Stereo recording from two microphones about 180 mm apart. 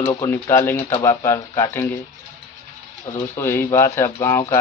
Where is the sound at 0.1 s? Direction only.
15° left (ahead or behind).